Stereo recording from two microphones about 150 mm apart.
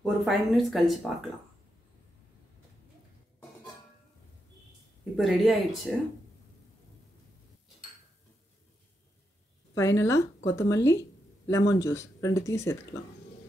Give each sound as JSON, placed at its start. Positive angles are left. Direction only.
{"t": 0.0, "sound": "speech", "side_deg": 0}
{"t": 5.1, "sound": "speech", "side_deg": 0}
{"t": 9.8, "sound": "speech", "side_deg": 20}